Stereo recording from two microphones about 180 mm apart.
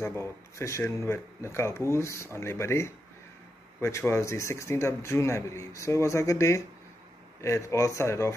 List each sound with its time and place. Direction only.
0.0 s a man's voice: 15° left (ahead or behind)